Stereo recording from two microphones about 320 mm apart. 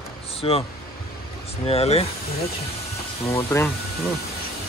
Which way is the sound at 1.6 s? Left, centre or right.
Centre.